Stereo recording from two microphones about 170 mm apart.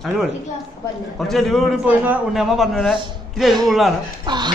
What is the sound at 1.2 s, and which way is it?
Speech, centre (ahead or behind).